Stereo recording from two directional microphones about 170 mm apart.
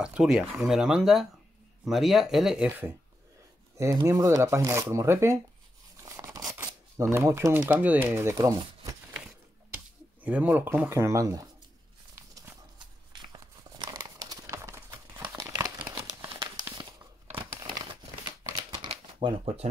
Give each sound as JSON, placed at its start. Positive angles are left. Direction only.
{"t": 0.0, "sound": "speech", "side_deg": -5}
{"t": 10.2, "sound": "speech", "side_deg": -10}
{"t": 12.4, "sound": "a sound", "side_deg": -25}
{"t": 15.9, "sound": "crumpling", "side_deg": -25}
{"t": 18.8, "sound": "shuffling cards", "side_deg": -25}